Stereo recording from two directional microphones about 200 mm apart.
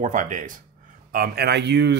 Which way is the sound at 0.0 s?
40° right (ahead or behind).